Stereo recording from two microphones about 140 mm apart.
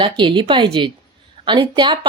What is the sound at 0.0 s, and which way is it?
A woman's voice, 35° right (ahead or behind).